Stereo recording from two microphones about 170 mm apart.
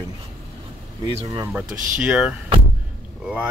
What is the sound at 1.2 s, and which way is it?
Speech, 20° right (ahead or behind).